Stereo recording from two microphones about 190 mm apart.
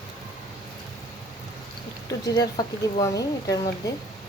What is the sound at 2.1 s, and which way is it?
Speech, 20° left (ahead or behind).